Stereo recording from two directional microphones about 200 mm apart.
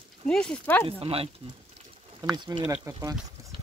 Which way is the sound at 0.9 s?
30° right (ahead or behind).